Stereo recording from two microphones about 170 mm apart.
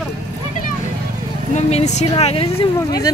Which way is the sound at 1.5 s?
40° left (ahead or behind).